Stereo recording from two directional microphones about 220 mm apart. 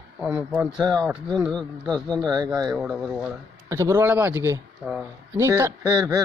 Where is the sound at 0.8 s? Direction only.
15° right (ahead or behind).